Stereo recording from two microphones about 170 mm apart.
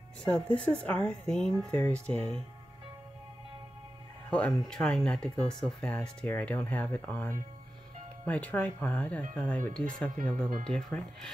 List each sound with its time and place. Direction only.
0.2 s speech: 5° left (ahead or behind)
4.3 s speech: 5° left (ahead or behind)
10.0 s speech: 55° right (ahead or behind)
10.6 s speech: 5° left (ahead or behind)